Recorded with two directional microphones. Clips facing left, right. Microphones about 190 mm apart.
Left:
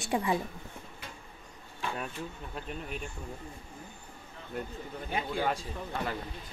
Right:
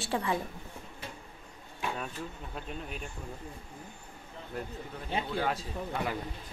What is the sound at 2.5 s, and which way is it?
Speech, centre (ahead or behind).